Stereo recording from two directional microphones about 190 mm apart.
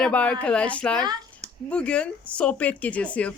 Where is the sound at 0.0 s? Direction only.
5° left (ahead or behind).